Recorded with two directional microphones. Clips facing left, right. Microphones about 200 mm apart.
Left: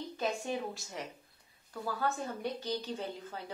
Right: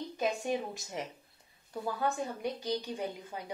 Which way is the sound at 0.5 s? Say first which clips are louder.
Right 3 dB; 20° right (ahead or behind).